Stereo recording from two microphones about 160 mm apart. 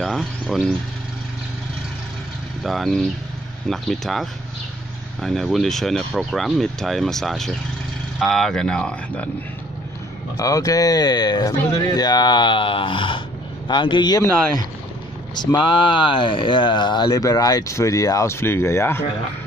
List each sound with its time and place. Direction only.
0.0 s speech: centre (ahead or behind)
2.6 s speech: centre (ahead or behind)
10.3 s speech: 20° left (ahead or behind)
15.3 s speech: 25° left (ahead or behind)